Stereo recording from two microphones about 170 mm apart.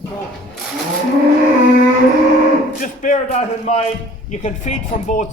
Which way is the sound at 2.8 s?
50° left (ahead or behind).